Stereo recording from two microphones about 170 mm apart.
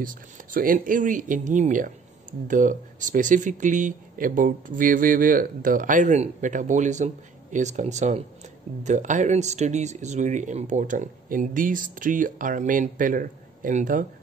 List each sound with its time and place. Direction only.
0.0 s speech: 55° right (ahead or behind)